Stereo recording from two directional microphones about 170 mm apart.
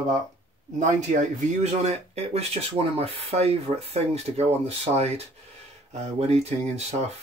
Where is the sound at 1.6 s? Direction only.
40° right (ahead or behind).